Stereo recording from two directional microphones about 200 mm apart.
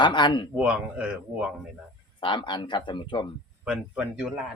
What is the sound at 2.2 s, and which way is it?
Speech, 25° left (ahead or behind).